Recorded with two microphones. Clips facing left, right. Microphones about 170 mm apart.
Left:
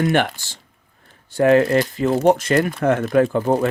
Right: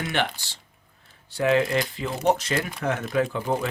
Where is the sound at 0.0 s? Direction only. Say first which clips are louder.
Left 8 dB; 50° left (ahead or behind).